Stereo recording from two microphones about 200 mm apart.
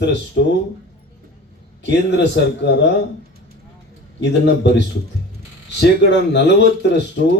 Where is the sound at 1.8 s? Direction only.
60° left (ahead or behind).